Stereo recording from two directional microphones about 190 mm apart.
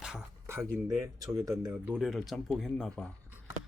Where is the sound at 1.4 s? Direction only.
20° right (ahead or behind).